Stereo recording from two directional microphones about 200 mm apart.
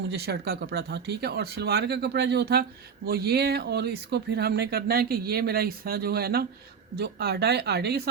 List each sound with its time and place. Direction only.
0.1 s speech: 55° right (ahead or behind)